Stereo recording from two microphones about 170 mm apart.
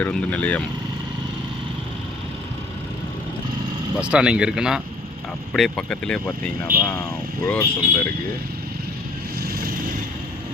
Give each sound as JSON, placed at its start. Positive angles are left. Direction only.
{"t": 0.0, "sound": "speech", "side_deg": 5}
{"t": 3.9, "sound": "speech", "side_deg": -5}
{"t": 9.4, "sound": "vehicle", "side_deg": -60}